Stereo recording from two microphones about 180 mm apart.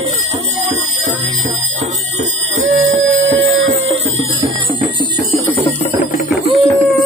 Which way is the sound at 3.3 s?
90° right.